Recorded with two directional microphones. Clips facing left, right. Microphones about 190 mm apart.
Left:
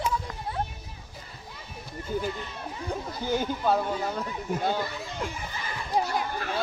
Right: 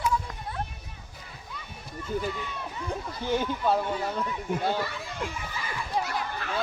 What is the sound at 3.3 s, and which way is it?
Speech, 5° left (ahead or behind).